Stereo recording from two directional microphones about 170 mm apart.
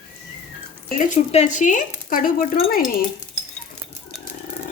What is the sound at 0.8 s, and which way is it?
A woman's voice, 50° left (ahead or behind).